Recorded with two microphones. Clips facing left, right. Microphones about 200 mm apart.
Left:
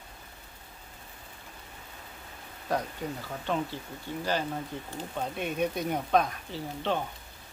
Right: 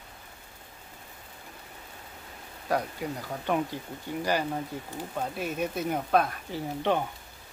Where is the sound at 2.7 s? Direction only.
10° right (ahead or behind).